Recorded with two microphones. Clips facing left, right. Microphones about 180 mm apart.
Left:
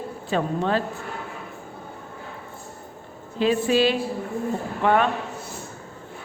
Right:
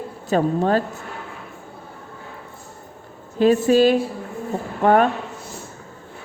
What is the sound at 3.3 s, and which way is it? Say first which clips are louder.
Speech: right 5 dB; 45° right (ahead or behind).